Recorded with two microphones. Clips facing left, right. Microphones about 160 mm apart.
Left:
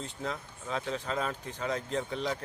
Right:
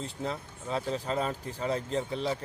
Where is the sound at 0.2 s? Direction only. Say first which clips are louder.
Right 1 dB; 35° right (ahead or behind).